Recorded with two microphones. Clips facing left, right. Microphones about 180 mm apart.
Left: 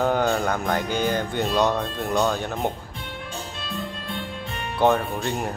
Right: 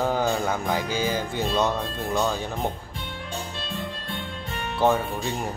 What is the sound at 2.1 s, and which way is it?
Speech, centre (ahead or behind).